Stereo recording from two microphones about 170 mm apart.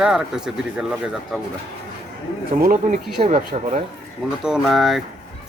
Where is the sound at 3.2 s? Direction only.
40° right (ahead or behind).